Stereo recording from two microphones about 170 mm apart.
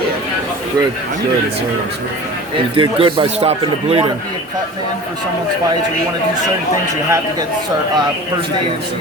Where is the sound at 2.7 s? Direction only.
30° right (ahead or behind).